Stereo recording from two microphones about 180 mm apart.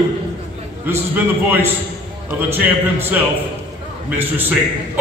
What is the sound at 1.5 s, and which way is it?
Speech, 10° right (ahead or behind).